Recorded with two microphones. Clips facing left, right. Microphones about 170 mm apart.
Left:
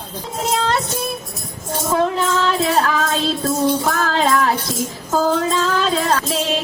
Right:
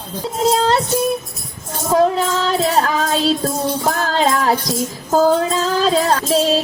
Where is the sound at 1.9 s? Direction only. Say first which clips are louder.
Right 4 dB; 35° right (ahead or behind).